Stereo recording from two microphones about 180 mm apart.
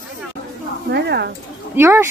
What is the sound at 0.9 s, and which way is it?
Speech, 65° right (ahead or behind).